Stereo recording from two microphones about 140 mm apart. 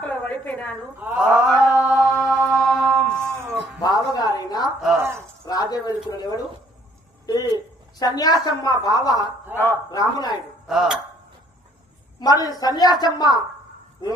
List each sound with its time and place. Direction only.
0.0 s a sound: 10° left (ahead or behind)
0.9 s mantra: 10° right (ahead or behind)
2.5 s music: centre (ahead or behind)
3.8 s a sound: 30° left (ahead or behind)
4.9 s speech: 15° right (ahead or behind)
5.5 s a woman's voice: 30° left (ahead or behind)
10.7 s speech: centre (ahead or behind)
12.2 s speech: 25° left (ahead or behind)